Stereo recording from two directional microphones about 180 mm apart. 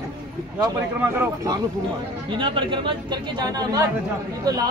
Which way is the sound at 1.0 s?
15° right (ahead or behind).